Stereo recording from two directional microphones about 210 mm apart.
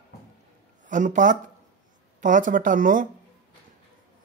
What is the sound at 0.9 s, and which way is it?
Speech, 35° right (ahead or behind).